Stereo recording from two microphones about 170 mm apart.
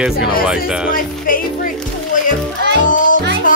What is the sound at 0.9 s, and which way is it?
Music, 55° left (ahead or behind).